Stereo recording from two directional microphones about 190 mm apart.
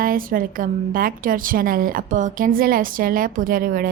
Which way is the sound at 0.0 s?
50° right (ahead or behind).